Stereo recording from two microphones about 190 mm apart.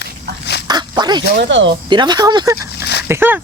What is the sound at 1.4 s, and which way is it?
Speech, 75° right (ahead or behind).